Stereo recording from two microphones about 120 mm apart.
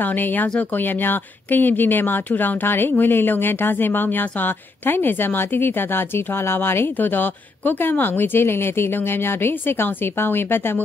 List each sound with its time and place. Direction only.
0.0 s speech: 15° left (ahead or behind)